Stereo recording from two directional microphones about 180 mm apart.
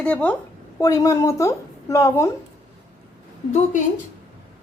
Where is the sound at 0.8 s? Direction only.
20° left (ahead or behind).